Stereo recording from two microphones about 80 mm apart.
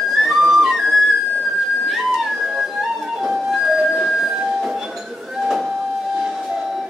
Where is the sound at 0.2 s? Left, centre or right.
Centre.